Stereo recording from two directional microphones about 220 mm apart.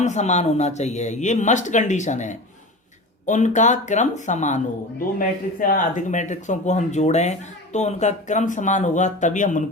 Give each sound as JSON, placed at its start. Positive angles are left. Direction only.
{"t": 0.0, "sound": "speech", "side_deg": 30}